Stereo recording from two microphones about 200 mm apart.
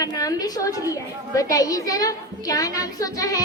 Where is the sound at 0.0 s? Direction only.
20° left (ahead or behind).